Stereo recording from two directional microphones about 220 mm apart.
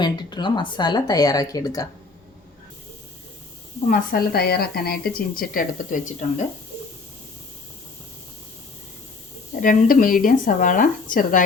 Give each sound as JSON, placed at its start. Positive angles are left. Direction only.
{"t": 0.0, "sound": "speech", "side_deg": 20}
{"t": 3.8, "sound": "a woman's voice", "side_deg": 40}
{"t": 9.6, "sound": "speech", "side_deg": 40}